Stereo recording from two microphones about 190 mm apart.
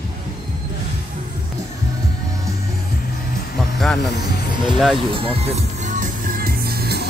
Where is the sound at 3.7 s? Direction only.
Centre (ahead or behind).